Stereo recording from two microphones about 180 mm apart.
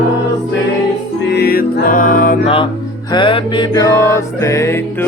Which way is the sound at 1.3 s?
60° left (ahead or behind).